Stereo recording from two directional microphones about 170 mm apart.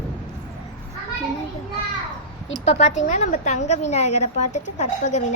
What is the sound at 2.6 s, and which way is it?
A woman's voice, 40° left (ahead or behind).